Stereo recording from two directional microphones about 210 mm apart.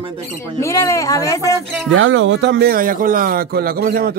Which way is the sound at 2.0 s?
65° right (ahead or behind).